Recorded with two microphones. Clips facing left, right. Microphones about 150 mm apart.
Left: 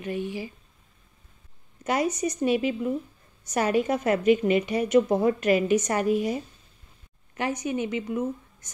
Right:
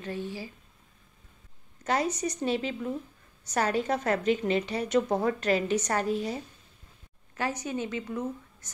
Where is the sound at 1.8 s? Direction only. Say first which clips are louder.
Left 3 dB; 10° left (ahead or behind).